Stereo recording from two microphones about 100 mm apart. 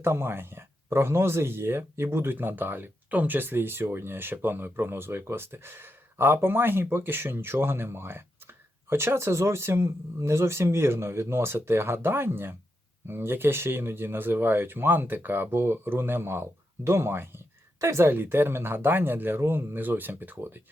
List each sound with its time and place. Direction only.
0.0 s speech: 25° right (ahead or behind)